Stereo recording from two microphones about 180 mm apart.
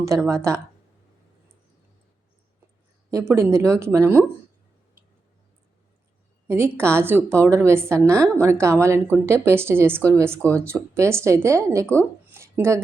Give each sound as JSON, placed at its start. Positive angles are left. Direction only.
{"t": 0.0, "sound": "a woman's voice", "side_deg": -15}
{"t": 3.1, "sound": "a woman's voice", "side_deg": -15}
{"t": 6.5, "sound": "a woman's voice", "side_deg": -15}
{"t": 10.4, "sound": "speech", "side_deg": 5}
{"t": 10.7, "sound": "a woman's voice", "side_deg": -15}
{"t": 11.9, "sound": "a sound", "side_deg": -15}